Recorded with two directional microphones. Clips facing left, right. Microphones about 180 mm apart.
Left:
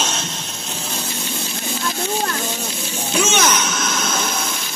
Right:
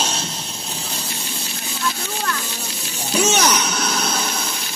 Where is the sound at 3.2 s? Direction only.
35° right (ahead or behind).